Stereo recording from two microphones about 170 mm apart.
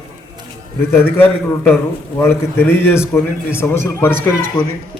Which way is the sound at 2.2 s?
15° left (ahead or behind).